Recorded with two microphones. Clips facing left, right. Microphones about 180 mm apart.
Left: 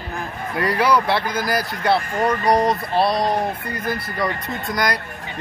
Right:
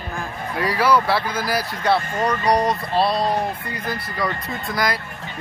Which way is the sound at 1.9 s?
25° left (ahead or behind).